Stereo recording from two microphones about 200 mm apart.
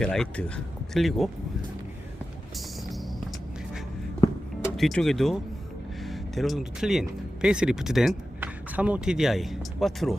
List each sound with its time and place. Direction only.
0.0 s speech: 5° left (ahead or behind)
2.6 s music: centre (ahead or behind)
4.8 s speech: centre (ahead or behind)